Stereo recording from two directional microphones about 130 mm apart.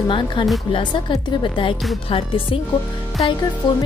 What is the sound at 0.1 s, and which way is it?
Speech, 35° left (ahead or behind).